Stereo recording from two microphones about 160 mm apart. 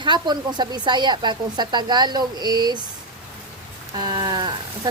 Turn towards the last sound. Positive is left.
turn(degrees=-25)  # may be behind; listen again after turning